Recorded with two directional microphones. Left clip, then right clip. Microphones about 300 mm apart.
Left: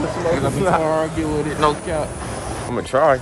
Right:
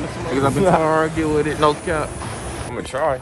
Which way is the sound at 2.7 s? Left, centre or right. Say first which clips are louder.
Left 6 dB; left.